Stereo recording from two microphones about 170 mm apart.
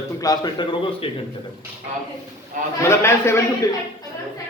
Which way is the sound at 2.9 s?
15° left (ahead or behind).